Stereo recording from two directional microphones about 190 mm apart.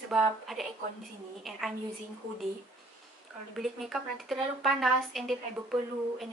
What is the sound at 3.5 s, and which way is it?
Speech, centre (ahead or behind).